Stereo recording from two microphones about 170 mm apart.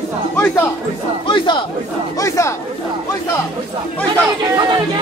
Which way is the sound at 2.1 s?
20° left (ahead or behind).